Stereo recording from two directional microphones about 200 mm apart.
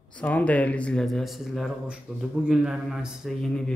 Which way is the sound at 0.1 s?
5° left (ahead or behind).